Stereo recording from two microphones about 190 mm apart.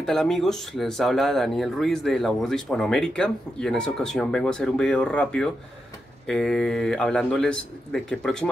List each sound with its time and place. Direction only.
0.0 s speech: centre (ahead or behind)